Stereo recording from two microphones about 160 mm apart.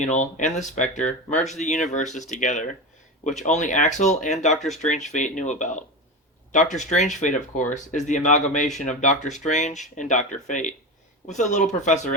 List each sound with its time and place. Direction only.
0.0 s speech: 50° left (ahead or behind)